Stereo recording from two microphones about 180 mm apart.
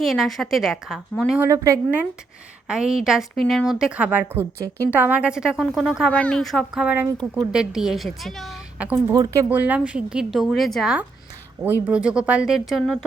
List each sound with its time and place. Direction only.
0.0 s a woman's voice: centre (ahead or behind)
1.4 s a woman's voice: 15° right (ahead or behind)
2.6 s a woman's voice: 5° right (ahead or behind)
9.1 s a woman's voice: 20° right (ahead or behind); by 13.1 s centre (ahead or behind)